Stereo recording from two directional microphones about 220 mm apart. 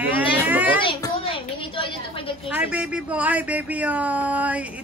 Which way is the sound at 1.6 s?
25° left (ahead or behind).